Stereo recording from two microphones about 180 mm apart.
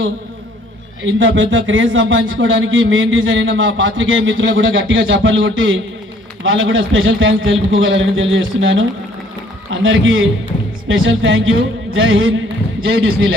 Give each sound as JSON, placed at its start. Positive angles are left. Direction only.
{"t": 1.0, "sound": "a man's voice", "side_deg": -90}